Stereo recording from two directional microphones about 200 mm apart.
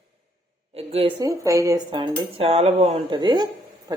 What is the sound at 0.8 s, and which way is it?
Speech, 30° right (ahead or behind).